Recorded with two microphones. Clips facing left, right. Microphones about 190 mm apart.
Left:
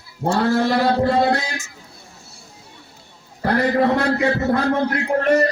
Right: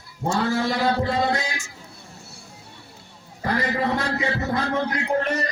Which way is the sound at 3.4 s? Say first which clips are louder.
Left 6 dB; 60° left (ahead or behind).